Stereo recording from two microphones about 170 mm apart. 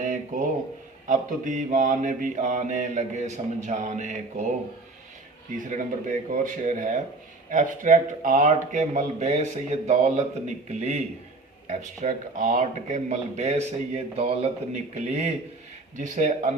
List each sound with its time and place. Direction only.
0.0 s a sound: 50° right (ahead or behind)
1.0 s speech: 50° right (ahead or behind)
5.6 s a man's voice: 50° right (ahead or behind)